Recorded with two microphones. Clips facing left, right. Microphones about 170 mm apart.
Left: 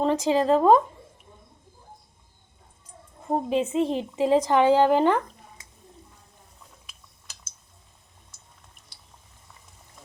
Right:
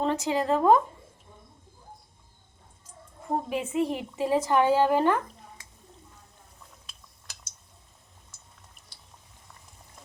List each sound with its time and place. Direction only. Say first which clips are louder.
0.0 s a sound: left 4 dB; 15° left (ahead or behind)
0.4 s a woman's voice: left 2 dB; 20° left (ahead or behind)
3.3 s a woman's voice: left 4 dB; 25° left (ahead or behind)